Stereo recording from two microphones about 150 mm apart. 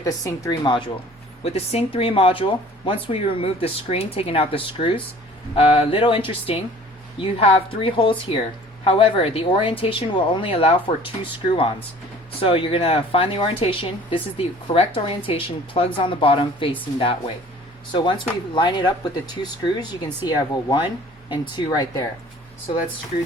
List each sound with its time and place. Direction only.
0.0 s a woman's voice: 20° left (ahead or behind)
1.5 s a woman's voice: 45° left (ahead or behind); by 22.0 s 25° left (ahead or behind)